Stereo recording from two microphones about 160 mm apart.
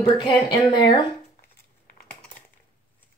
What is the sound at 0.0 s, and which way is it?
Speech, 30° left (ahead or behind).